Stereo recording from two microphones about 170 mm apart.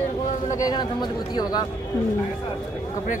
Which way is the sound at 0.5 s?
25° left (ahead or behind).